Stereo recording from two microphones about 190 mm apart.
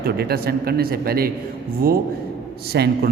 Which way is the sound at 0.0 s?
55° right (ahead or behind).